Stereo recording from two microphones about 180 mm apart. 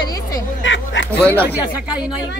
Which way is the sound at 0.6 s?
90° left.